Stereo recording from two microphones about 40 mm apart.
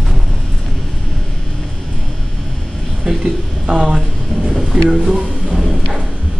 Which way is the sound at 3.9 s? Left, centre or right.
Centre.